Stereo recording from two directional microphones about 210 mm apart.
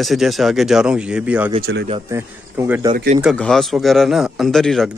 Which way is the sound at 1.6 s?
55° right (ahead or behind).